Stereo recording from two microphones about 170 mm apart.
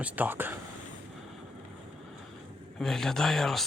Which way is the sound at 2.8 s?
Centre (ahead or behind).